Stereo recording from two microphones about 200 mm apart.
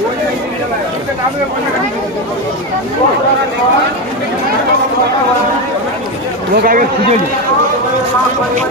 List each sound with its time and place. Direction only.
6.5 s speech: 45° right (ahead or behind)